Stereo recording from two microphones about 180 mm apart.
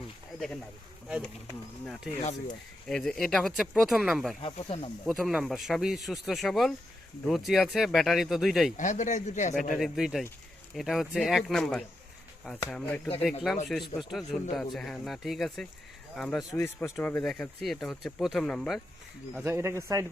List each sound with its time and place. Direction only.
0.3 s speech: centre (ahead or behind)
4.4 s speech: 30° left (ahead or behind)
5.0 s speech: centre (ahead or behind)
8.8 s speech: 45° left (ahead or behind)
9.7 s speech: centre (ahead or behind)
16.6 s speech: 15° left (ahead or behind)
19.4 s speech: 15° right (ahead or behind)